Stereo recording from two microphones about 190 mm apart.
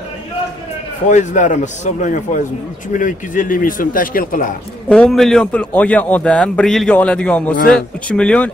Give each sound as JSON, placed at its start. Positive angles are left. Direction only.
{"t": 1.0, "sound": "a man's voice", "side_deg": 40}
{"t": 4.8, "sound": "a man's voice", "side_deg": 5}